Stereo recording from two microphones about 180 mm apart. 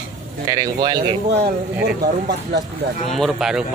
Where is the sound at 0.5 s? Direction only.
20° right (ahead or behind).